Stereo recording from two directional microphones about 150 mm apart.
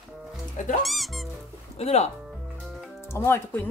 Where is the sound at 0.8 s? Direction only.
Centre (ahead or behind).